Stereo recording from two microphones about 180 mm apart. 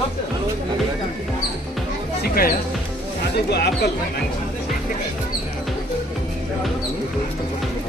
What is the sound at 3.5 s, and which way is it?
Speech, 65° left (ahead or behind).